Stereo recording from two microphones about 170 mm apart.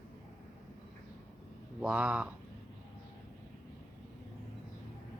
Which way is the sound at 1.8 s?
5° right (ahead or behind).